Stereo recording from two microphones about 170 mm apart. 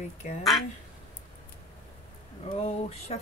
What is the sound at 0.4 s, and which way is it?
Speech, centre (ahead or behind).